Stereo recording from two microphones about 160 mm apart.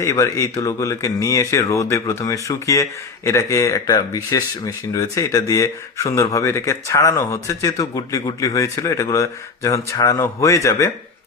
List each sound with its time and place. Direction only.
0.0 s speech: 20° left (ahead or behind)